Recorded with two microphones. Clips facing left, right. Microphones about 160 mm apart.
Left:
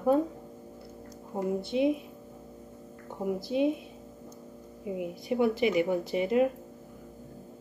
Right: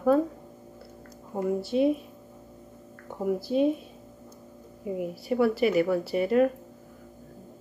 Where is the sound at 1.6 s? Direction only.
20° left (ahead or behind).